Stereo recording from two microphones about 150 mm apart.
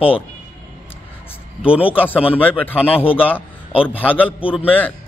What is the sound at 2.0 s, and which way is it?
A man's voice, 10° left (ahead or behind).